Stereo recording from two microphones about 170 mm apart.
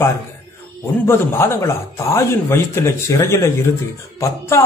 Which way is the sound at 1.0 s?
15° left (ahead or behind).